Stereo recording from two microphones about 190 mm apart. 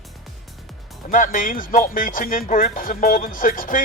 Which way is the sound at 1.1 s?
45° left (ahead or behind).